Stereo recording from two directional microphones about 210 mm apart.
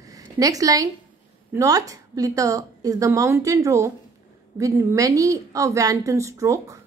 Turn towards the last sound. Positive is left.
turn(degrees=-15)  # may be behind; listen again after turning